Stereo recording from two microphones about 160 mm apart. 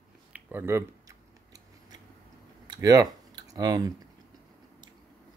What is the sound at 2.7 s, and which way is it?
Typing, 20° right (ahead or behind).